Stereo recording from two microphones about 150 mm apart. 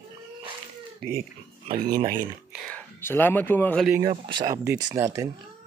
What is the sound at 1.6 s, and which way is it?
Speech, 65° right (ahead or behind).